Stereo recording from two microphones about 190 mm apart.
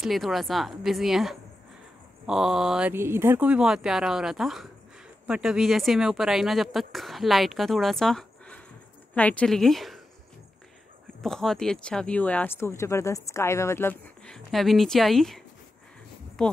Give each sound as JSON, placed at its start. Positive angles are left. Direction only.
{"t": 0.0, "sound": "speech", "side_deg": 0}
{"t": 11.2, "sound": "speech", "side_deg": 0}